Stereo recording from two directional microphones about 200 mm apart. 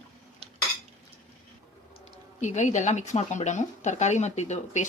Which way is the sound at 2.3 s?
35° left (ahead or behind).